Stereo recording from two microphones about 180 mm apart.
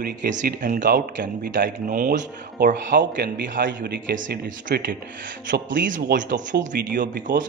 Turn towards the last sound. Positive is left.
turn(degrees=-45)  # may be behind; listen again after turning